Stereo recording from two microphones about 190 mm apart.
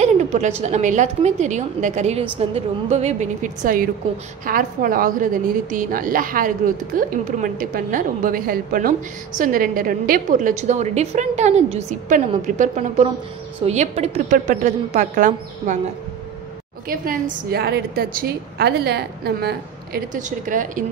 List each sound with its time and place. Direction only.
0.0 s a woman's voice: 40° right (ahead or behind)
16.8 s a woman's voice: 50° right (ahead or behind)